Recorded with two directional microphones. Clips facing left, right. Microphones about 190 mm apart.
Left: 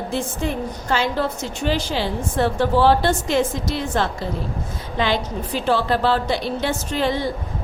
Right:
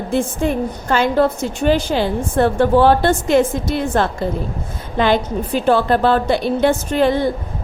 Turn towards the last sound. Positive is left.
turn(degrees=-55)  # may be behind; listen again after turning